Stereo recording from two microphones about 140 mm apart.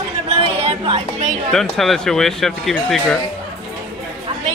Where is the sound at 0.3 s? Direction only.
45° right (ahead or behind).